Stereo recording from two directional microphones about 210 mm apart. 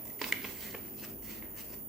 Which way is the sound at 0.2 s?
Centre (ahead or behind).